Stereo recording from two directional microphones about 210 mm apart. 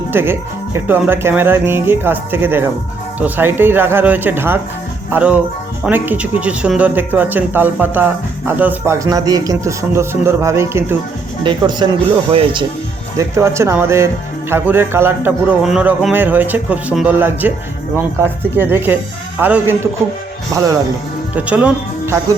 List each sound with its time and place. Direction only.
0.1 s speech: 10° right (ahead or behind); by 12.6 s 25° right (ahead or behind)
13.1 s speech: 15° right (ahead or behind)